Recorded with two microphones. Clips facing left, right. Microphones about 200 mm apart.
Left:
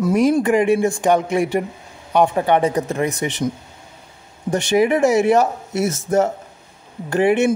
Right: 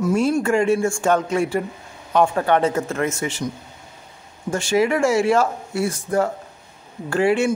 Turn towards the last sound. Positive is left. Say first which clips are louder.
# left 2 dB
turn(degrees=20)  # may be behind; listen again after turning